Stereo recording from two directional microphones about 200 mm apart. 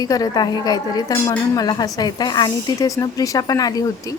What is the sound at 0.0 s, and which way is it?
A woman's voice, 20° left (ahead or behind).